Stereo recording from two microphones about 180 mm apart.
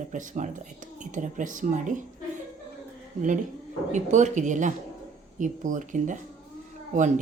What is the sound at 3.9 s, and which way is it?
A woman's voice, 40° right (ahead or behind).